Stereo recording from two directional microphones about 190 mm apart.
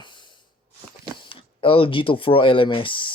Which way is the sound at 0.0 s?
25° left (ahead or behind).